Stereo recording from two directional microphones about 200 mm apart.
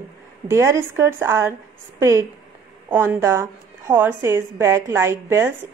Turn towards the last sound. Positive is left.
turn(degrees=-15)  # may be behind; listen again after turning